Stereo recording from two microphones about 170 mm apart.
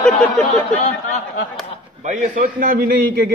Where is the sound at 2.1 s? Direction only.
55° right (ahead or behind).